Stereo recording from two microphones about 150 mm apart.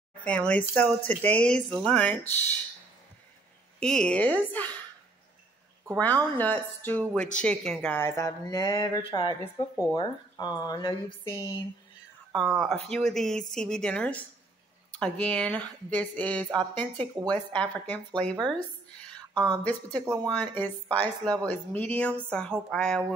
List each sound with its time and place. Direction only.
0.2 s speech: 10° left (ahead or behind)
3.8 s speech: 5° left (ahead or behind)
5.9 s speech: 10° left (ahead or behind)
8.0 s speech: 20° left (ahead or behind)
12.3 s speech: 5° left (ahead or behind)
18.5 s a sound: 5° left (ahead or behind)
20.3 s speech: 10° left (ahead or behind)